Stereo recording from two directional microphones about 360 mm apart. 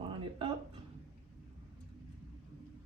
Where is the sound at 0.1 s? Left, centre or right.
Centre.